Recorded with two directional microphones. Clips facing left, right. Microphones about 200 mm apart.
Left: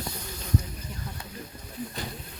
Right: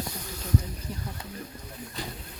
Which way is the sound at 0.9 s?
30° right (ahead or behind).